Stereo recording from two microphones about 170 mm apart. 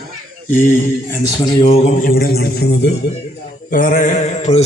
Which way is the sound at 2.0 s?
60° left (ahead or behind).